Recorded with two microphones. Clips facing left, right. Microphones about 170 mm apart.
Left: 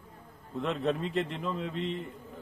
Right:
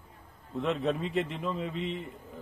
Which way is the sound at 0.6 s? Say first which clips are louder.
Right 1 dB; centre (ahead or behind).